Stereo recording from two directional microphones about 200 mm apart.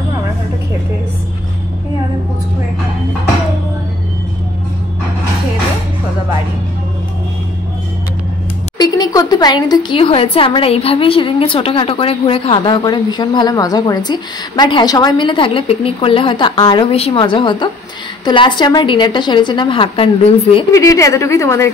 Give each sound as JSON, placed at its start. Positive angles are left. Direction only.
{"t": 8.7, "sound": "speech", "side_deg": 20}
{"t": 20.7, "sound": "a woman's voice", "side_deg": 15}